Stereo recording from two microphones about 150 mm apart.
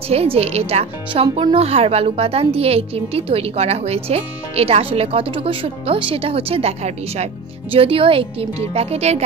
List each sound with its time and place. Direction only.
0.1 s speech: 45° right (ahead or behind)